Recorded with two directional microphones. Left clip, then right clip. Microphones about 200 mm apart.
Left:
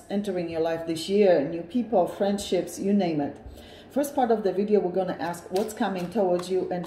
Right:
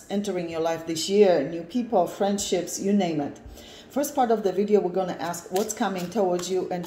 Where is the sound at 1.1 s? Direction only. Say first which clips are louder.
Right 1 dB; 5° right (ahead or behind).